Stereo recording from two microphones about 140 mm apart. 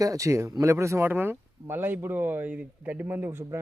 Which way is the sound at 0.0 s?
25° right (ahead or behind).